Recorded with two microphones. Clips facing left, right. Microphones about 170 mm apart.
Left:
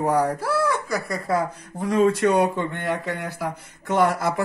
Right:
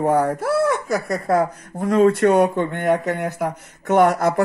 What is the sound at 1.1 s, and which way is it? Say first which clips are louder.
Speech: right 5 dB; 55° right (ahead or behind).